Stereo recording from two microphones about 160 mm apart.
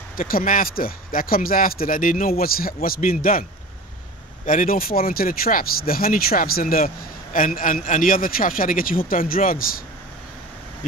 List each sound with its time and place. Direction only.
0.2 s speech: 60° left (ahead or behind)
4.5 s speech: 60° left (ahead or behind)